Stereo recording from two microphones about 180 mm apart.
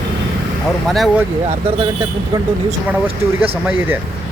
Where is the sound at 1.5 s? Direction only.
35° right (ahead or behind).